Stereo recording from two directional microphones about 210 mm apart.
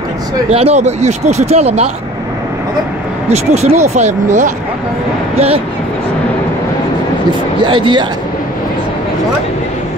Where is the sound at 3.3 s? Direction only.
30° right (ahead or behind).